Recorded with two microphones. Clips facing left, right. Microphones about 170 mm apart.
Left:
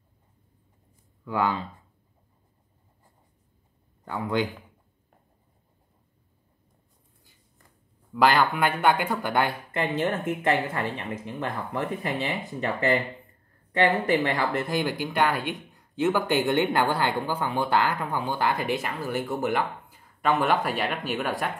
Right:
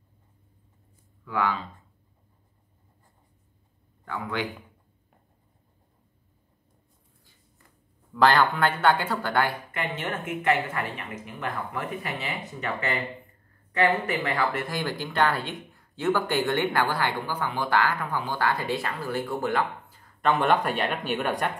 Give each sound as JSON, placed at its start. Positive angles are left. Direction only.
{"t": 1.2, "sound": "speech", "side_deg": 30}
{"t": 4.2, "sound": "speech", "side_deg": 30}
{"t": 8.1, "sound": "speech", "side_deg": 10}
{"t": 9.7, "sound": "speech", "side_deg": 30}